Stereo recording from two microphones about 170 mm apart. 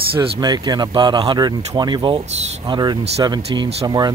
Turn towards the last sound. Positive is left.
turn(degrees=-25)  # may be behind; listen again after turning